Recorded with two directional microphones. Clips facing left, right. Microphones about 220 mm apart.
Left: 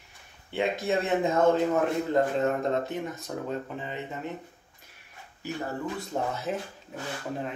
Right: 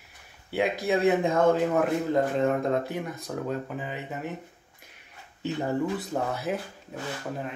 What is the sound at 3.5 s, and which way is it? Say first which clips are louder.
Speech: right 2 dB; 5° right (ahead or behind).